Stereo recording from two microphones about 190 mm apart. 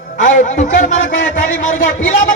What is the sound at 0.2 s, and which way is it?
A man's voice, 40° left (ahead or behind).